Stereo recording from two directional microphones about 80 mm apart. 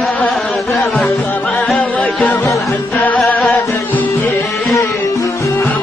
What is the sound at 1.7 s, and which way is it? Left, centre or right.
Music, centre.